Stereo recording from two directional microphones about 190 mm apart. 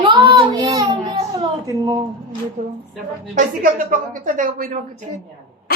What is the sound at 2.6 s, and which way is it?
A woman's voice, 50° right (ahead or behind).